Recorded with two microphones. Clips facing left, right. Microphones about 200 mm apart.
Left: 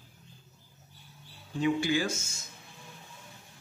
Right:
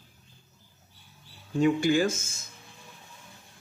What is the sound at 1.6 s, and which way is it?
Speech, 45° right (ahead or behind).